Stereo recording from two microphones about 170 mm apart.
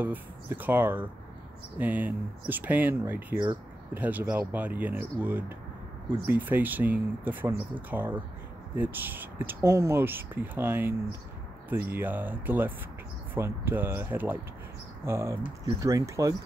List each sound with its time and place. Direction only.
0.0 s speech: 10° right (ahead or behind)